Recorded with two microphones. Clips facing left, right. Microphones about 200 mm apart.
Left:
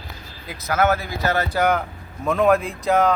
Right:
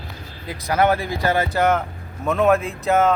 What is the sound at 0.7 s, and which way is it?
Speech, 30° right (ahead or behind).